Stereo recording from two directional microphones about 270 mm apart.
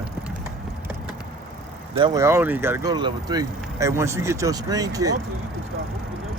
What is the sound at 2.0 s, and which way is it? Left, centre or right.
Speech, centre.